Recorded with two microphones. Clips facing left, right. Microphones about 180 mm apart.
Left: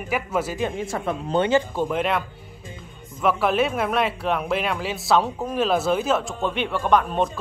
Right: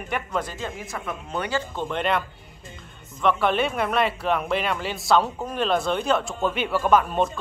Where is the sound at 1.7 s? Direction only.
5° left (ahead or behind).